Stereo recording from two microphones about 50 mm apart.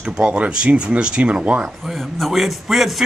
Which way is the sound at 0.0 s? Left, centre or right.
Centre.